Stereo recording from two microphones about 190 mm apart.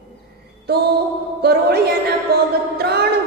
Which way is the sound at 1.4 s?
55° right (ahead or behind).